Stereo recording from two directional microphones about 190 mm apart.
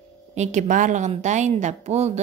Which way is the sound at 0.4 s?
40° right (ahead or behind).